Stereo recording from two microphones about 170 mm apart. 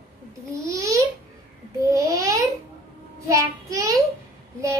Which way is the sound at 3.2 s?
20° right (ahead or behind).